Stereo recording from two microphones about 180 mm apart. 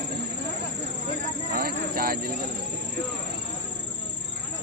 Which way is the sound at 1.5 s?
55° right (ahead or behind).